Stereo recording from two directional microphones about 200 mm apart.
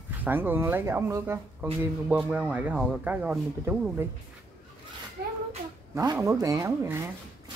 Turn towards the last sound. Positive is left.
turn(degrees=-15)  # may be behind; listen again after turning